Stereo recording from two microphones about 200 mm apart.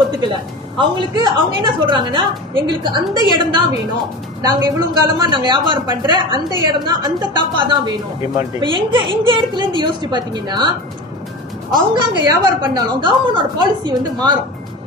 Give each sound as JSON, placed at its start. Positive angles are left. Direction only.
{"t": 0.7, "sound": "a woman's voice", "side_deg": -25}
{"t": 11.7, "sound": "a woman's voice", "side_deg": -20}